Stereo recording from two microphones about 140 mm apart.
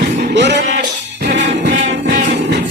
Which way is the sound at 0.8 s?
75° right (ahead or behind).